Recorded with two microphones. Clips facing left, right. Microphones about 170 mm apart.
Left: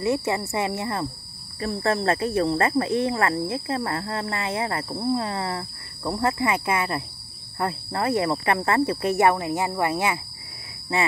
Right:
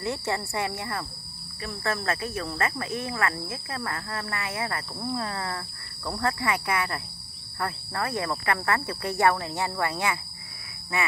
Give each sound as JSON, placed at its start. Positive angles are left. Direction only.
{"t": 0.0, "sound": "speech", "side_deg": 20}